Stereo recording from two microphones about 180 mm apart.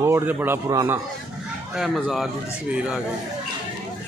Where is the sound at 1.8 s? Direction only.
Centre (ahead or behind).